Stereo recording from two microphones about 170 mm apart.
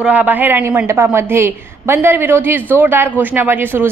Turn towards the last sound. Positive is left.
turn(degrees=-10)  # may be behind; listen again after turning